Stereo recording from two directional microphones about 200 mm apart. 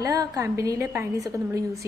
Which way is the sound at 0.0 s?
15° right (ahead or behind).